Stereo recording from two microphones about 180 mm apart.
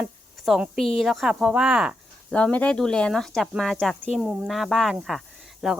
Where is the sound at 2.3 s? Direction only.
5° left (ahead or behind).